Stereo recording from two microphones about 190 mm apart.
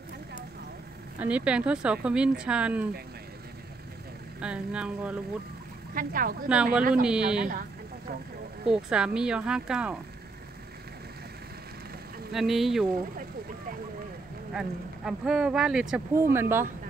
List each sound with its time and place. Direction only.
1.2 s speech: 5° right (ahead or behind)
4.4 s speech: 5° right (ahead or behind)
5.9 s speech: 50° right (ahead or behind)
6.5 s speech: 5° right (ahead or behind)
8.6 s speech: 5° right (ahead or behind)
12.3 s speech: centre (ahead or behind)
14.5 s speech: 5° right (ahead or behind)